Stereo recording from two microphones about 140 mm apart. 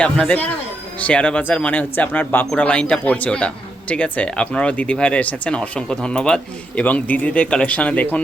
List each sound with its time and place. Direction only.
0.0 s speech: 10° left (ahead or behind)